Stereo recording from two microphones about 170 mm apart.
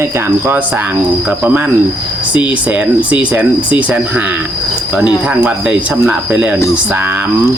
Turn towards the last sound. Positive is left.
turn(degrees=-10)  # may be behind; listen again after turning